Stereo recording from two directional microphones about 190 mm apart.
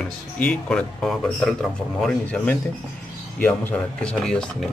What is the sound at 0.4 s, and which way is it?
Speech, 5° left (ahead or behind).